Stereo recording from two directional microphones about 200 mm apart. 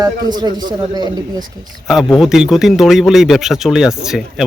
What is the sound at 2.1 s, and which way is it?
Speech, centre (ahead or behind).